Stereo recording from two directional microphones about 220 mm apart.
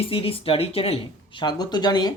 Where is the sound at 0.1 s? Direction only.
25° left (ahead or behind).